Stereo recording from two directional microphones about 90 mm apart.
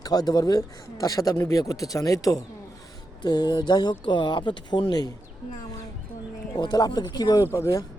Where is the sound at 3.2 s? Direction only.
55° left (ahead or behind).